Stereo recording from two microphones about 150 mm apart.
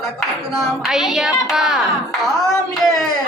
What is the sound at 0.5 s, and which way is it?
A child's voice, centre (ahead or behind).